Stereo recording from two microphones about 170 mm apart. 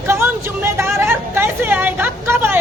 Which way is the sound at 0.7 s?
15° right (ahead or behind).